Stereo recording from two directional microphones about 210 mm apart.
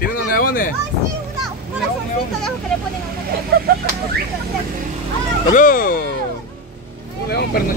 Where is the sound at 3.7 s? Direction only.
45° right (ahead or behind).